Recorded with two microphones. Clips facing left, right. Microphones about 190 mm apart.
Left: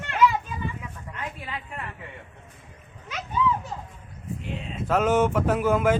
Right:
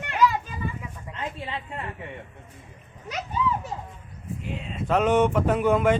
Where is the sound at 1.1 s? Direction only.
25° right (ahead or behind).